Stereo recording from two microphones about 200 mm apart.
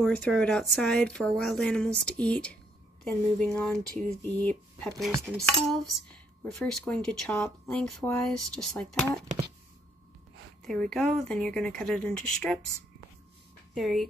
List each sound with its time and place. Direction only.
0.0 s speech: 5° left (ahead or behind)
5.1 s dishes: 15° right (ahead or behind)
5.4 s speech: 5° left (ahead or behind)
10.6 s speech: 5° left (ahead or behind)
13.7 s speech: centre (ahead or behind)